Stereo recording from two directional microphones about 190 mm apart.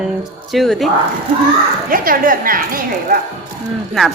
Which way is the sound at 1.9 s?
50° right (ahead or behind).